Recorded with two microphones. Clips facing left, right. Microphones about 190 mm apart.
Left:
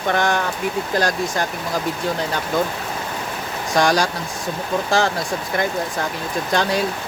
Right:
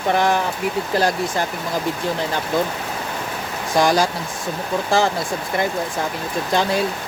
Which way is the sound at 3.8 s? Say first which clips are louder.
Right 1 dB; centre (ahead or behind).